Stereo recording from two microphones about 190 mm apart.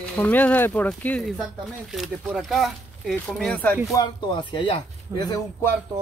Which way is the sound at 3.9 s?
20° left (ahead or behind).